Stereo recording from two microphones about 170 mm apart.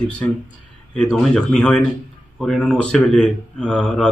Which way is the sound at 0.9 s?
5° left (ahead or behind).